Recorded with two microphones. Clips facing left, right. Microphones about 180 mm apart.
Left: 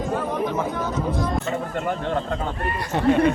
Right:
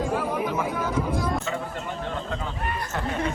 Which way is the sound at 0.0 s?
10° right (ahead or behind).